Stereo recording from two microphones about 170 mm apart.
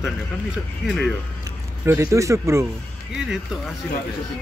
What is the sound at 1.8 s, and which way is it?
Speech, 15° right (ahead or behind).